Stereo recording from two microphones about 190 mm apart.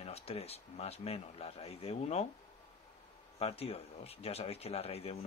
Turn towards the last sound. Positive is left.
turn(degrees=30)  # may be behind; listen again after turning